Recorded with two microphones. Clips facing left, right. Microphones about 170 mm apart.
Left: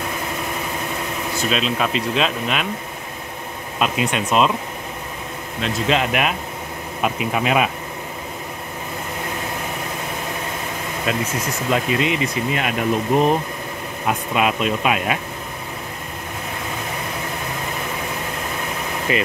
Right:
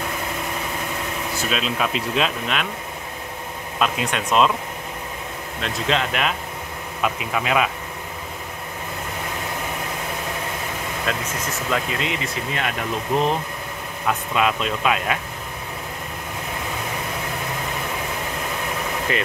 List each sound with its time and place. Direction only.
1.5 s speech: 5° right (ahead or behind)
3.8 s speech: 10° left (ahead or behind)
5.6 s speech: 10° left (ahead or behind)
11.1 s speech: 10° left (ahead or behind)
19.1 s speech: 5° left (ahead or behind)